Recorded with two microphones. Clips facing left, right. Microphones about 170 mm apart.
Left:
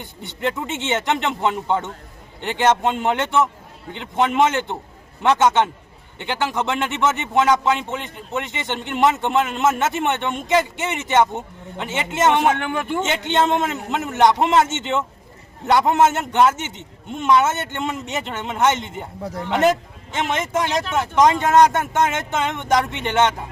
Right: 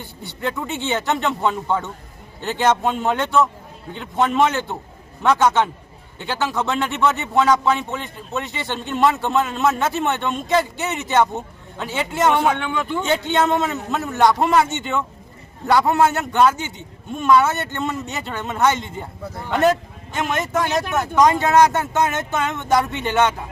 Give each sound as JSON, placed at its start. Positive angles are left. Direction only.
{"t": 0.0, "sound": "a man's voice", "side_deg": 20}